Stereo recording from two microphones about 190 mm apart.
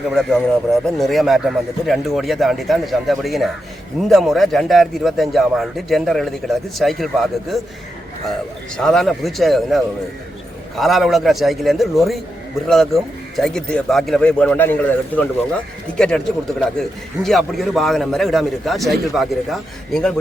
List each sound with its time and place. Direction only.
0.1 s a man's voice: 5° left (ahead or behind)
8.8 s a man's voice: centre (ahead or behind)